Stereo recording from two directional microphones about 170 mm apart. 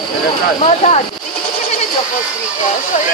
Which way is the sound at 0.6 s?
40° left (ahead or behind).